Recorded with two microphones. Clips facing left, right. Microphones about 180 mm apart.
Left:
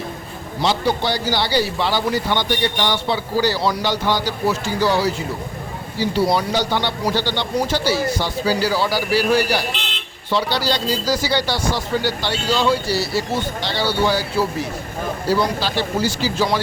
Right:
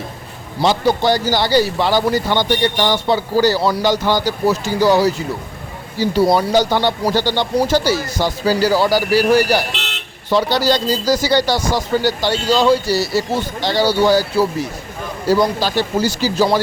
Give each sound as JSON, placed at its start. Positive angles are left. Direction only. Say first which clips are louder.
{"t": 0.6, "sound": "speech", "louder": "right 4 dB", "side_deg": -45}
{"t": 6.3, "sound": "speech", "louder": "right 5 dB", "side_deg": -45}
{"t": 15.3, "sound": "speech", "louder": "right 5 dB", "side_deg": -45}